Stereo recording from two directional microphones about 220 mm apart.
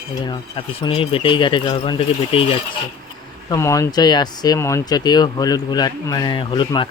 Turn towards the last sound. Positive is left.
turn(degrees=20)  # may be behind; listen again after turning